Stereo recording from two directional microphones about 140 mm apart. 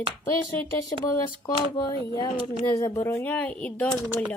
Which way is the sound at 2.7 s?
25° left (ahead or behind).